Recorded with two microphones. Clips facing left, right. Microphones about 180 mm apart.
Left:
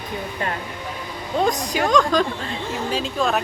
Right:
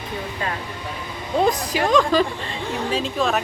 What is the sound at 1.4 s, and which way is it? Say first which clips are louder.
A woman's voice: right 1 dB; 5° right (ahead or behind).